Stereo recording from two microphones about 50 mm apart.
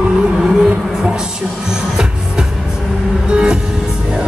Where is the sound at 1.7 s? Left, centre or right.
Centre.